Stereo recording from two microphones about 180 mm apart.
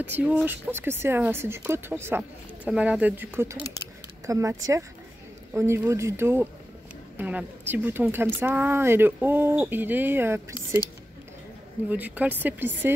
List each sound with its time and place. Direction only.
0.0 s a woman's voice: 10° right (ahead or behind)
11.9 s a woman's voice: 10° right (ahead or behind)